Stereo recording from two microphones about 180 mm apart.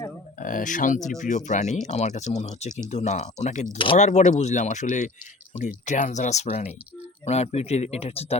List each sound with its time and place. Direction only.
0.3 s speech: 50° left (ahead or behind)